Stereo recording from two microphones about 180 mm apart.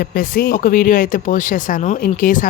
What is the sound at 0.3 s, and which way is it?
Speech, 50° left (ahead or behind).